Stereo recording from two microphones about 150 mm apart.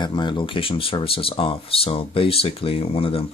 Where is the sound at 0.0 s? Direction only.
30° left (ahead or behind).